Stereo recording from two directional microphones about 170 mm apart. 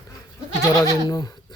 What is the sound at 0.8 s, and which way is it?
Goat, 20° left (ahead or behind).